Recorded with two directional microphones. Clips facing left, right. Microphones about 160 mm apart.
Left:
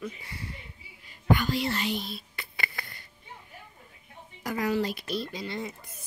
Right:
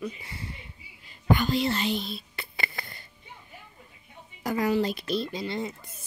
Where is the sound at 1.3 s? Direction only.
25° right (ahead or behind).